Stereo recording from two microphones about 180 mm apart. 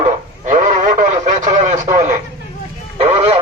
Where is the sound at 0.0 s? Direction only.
45° right (ahead or behind).